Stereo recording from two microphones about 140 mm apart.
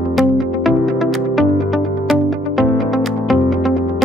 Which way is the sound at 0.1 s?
Centre (ahead or behind).